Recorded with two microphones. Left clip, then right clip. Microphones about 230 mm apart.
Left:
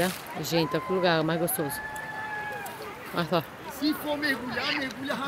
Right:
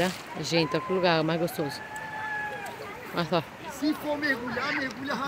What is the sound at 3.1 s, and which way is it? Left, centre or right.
Speech, centre.